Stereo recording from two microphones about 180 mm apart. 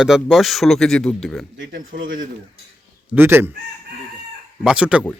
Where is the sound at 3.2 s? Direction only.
10° right (ahead or behind).